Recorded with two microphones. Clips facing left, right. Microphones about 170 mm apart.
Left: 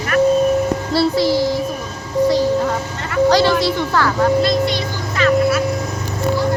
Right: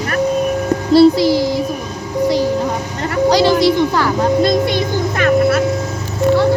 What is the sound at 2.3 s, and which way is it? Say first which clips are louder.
Music: right 1 dB; 15° right (ahead or behind).